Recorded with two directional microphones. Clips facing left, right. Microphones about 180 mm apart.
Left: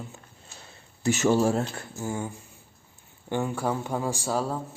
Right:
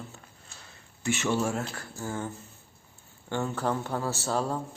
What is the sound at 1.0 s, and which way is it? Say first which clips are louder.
A man's voice: left 6 dB; 40° left (ahead or behind).